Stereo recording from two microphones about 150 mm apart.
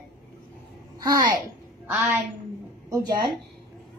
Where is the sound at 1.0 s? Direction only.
25° right (ahead or behind).